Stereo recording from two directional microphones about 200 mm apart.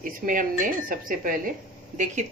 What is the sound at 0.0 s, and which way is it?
Speech, 45° right (ahead or behind).